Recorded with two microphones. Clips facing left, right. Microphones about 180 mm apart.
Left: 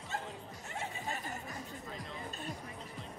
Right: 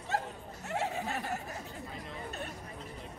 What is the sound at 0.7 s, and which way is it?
Neigh, 65° right (ahead or behind).